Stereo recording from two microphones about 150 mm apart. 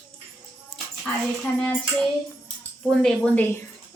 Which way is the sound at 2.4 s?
5° left (ahead or behind).